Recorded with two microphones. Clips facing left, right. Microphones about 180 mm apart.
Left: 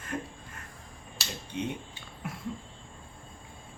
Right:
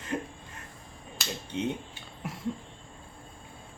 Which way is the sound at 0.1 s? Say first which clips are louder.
Right 3 dB; 20° right (ahead or behind).